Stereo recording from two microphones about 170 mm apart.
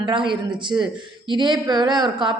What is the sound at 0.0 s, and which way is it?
A woman's voice, 30° right (ahead or behind).